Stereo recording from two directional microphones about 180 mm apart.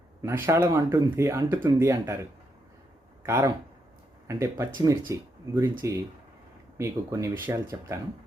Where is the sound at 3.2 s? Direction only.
15° right (ahead or behind).